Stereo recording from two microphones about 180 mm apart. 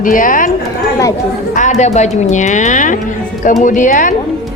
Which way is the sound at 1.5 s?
40° left (ahead or behind).